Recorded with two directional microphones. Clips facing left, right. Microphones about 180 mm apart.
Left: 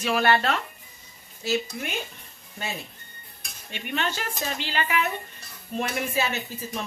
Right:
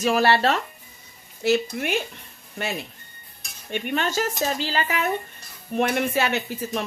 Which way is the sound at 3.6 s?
50° right (ahead or behind).